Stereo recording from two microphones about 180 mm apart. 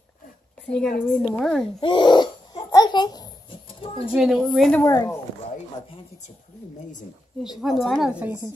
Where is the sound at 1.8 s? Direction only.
25° left (ahead or behind).